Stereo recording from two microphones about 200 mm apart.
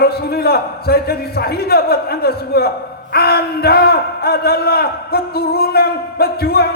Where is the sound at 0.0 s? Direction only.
50° left (ahead or behind).